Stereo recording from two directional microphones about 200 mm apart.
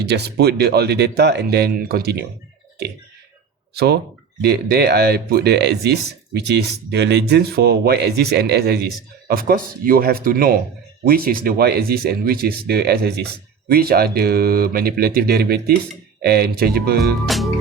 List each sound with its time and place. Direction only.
0.0 s speech: 55° right (ahead or behind)
3.8 s speech: 55° right (ahead or behind)
17.2 s music: centre (ahead or behind)